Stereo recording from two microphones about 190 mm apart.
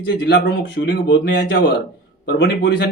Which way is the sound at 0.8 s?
65° left (ahead or behind).